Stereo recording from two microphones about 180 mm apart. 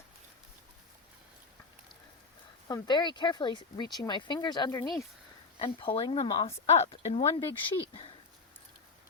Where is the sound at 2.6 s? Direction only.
25° left (ahead or behind).